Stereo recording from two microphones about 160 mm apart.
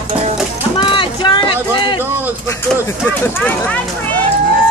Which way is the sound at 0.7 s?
30° left (ahead or behind).